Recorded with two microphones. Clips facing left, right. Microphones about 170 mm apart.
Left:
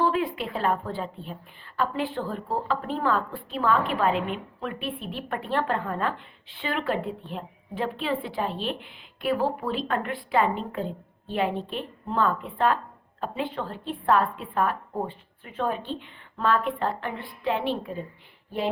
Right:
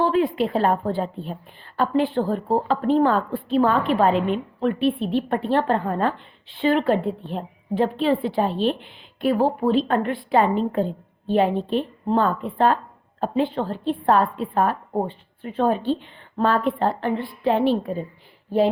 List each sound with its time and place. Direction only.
0.0 s a woman's voice: 30° right (ahead or behind)